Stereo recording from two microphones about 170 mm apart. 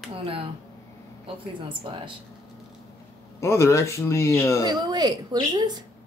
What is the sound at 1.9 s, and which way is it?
Speech, 30° right (ahead or behind).